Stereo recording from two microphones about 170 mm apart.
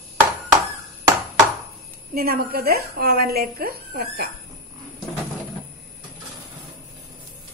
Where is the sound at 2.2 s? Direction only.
65° right (ahead or behind).